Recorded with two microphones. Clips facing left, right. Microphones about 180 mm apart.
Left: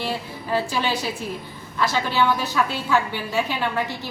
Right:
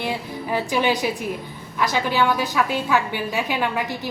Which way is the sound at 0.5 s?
15° right (ahead or behind).